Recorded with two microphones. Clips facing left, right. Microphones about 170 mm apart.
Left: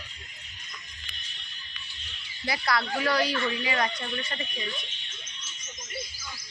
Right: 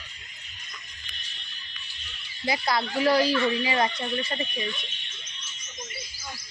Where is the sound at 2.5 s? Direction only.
25° right (ahead or behind).